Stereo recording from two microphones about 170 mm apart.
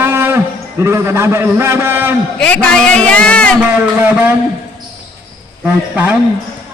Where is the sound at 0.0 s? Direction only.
15° right (ahead or behind).